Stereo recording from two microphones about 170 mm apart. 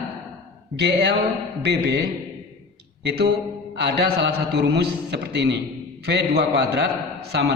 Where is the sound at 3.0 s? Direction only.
85° right.